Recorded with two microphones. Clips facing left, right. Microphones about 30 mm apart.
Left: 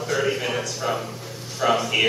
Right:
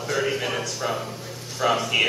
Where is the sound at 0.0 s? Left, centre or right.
Centre.